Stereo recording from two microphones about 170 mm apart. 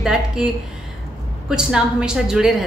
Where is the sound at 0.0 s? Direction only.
Centre (ahead or behind).